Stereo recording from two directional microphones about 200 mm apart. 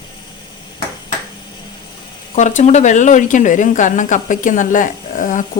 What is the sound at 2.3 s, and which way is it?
A woman's voice, 35° left (ahead or behind).